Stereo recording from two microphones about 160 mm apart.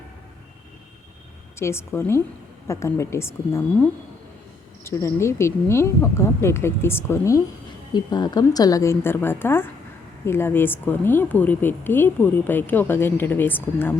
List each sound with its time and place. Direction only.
1.5 s a woman's voice: 15° left (ahead or behind)